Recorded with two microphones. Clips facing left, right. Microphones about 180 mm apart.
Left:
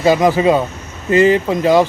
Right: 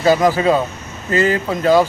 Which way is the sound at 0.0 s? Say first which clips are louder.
Left 2 dB; 15° left (ahead or behind).